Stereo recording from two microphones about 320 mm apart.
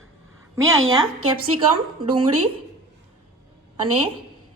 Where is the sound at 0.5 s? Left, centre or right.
Right.